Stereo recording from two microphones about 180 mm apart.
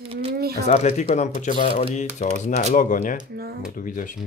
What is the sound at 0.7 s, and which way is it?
Speech, 40° left (ahead or behind).